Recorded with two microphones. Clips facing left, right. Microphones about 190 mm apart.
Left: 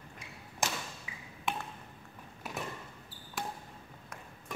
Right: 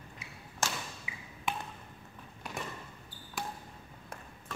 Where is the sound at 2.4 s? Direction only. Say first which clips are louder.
Left 1 dB; 5° left (ahead or behind).